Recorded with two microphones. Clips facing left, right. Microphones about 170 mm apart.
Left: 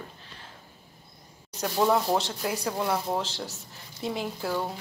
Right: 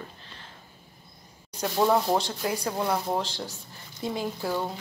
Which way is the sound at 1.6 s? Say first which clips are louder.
Right 1 dB; centre (ahead or behind).